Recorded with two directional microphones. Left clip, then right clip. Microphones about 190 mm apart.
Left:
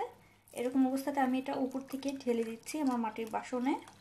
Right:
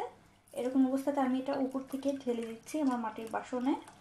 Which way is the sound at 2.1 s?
20° left (ahead or behind).